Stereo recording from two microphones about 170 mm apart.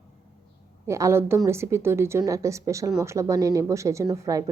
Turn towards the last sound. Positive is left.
turn(degrees=-20)  # may be behind; listen again after turning